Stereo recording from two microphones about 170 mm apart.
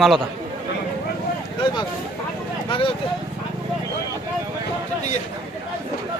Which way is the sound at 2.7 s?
30° left (ahead or behind).